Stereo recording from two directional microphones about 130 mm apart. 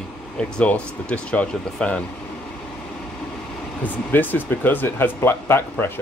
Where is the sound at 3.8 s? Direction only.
15° left (ahead or behind).